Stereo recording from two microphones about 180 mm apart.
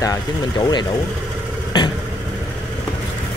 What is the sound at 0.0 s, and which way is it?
Speech, 20° left (ahead or behind).